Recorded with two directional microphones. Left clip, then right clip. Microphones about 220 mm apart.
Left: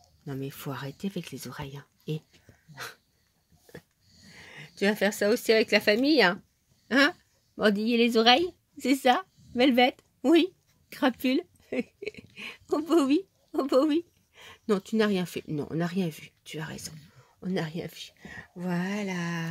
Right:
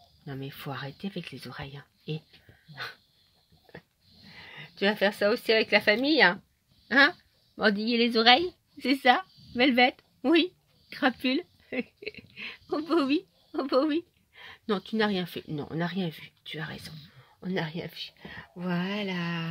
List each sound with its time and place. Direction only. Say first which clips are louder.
0.2 s speech: left 2 dB; 10° left (ahead or behind)
4.3 s a woman's voice: right 1 dB; 5° left (ahead or behind)